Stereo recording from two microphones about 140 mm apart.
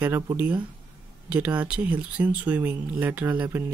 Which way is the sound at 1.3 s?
10° right (ahead or behind).